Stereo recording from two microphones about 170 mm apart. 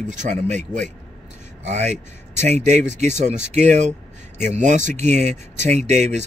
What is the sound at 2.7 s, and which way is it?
Speech, 45° right (ahead or behind).